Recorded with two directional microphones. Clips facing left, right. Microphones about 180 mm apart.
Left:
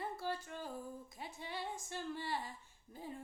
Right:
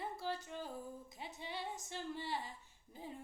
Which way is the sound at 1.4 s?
20° right (ahead or behind).